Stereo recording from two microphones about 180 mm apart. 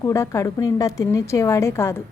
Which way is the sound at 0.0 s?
15° left (ahead or behind).